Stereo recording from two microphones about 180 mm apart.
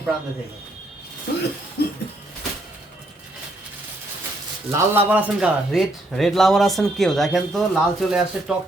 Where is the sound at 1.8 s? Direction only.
65° left (ahead or behind).